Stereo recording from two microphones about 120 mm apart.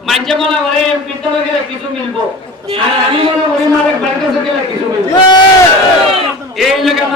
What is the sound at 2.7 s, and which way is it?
Speech, 45° right (ahead or behind).